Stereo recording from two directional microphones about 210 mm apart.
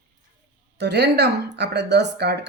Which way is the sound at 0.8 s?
50° right (ahead or behind).